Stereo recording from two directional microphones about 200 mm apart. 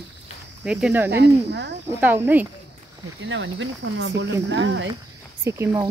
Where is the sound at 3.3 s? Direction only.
70° right (ahead or behind).